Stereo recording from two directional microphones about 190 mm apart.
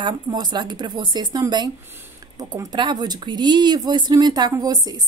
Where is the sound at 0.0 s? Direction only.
20° right (ahead or behind).